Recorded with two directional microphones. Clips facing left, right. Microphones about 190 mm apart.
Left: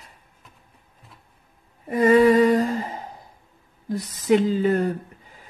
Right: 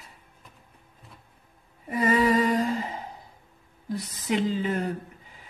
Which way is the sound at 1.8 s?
50° left (ahead or behind).